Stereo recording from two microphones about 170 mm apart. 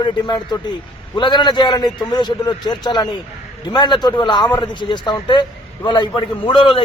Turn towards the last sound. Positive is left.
turn(degrees=30)  # may be behind; listen again after turning